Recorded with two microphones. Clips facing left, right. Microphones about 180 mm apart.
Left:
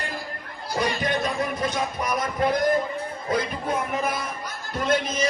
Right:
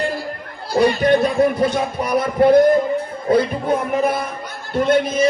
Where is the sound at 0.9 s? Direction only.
50° right (ahead or behind).